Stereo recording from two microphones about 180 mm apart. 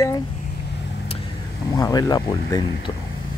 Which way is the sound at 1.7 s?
20° left (ahead or behind).